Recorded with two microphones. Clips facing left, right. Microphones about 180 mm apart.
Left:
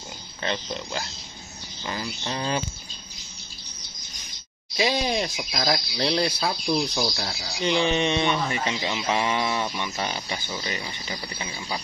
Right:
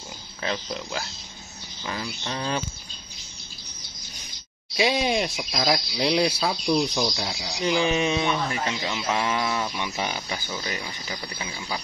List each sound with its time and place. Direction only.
0.4 s speech: centre (ahead or behind)
4.7 s speech: centre (ahead or behind)
9.8 s speech: 10° right (ahead or behind)
10.5 s speech: 5° left (ahead or behind)